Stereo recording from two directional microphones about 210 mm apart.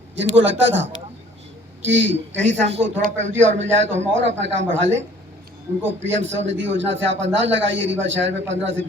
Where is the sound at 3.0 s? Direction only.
35° right (ahead or behind).